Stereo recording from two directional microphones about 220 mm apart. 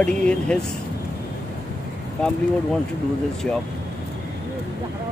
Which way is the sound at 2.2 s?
5° left (ahead or behind).